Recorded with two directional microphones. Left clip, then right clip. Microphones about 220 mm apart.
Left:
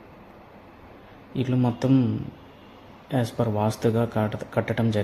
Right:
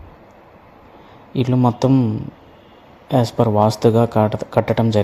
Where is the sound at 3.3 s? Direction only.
20° right (ahead or behind).